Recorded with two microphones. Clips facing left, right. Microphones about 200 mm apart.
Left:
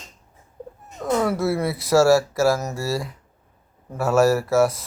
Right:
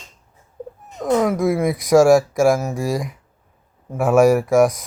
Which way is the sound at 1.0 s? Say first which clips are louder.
Right 4 dB; 15° right (ahead or behind).